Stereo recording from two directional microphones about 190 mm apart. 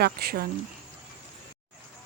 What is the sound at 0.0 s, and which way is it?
Speech, 55° right (ahead or behind).